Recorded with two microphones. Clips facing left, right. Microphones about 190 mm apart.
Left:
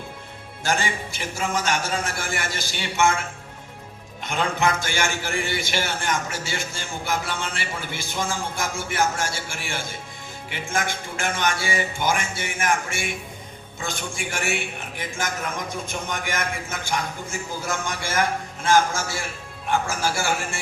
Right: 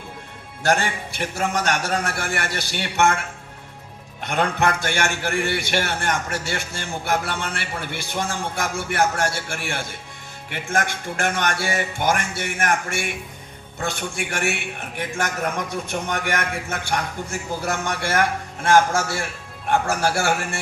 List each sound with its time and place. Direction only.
0.6 s a man's voice: 65° right (ahead or behind)
4.2 s a man's voice: 65° right (ahead or behind)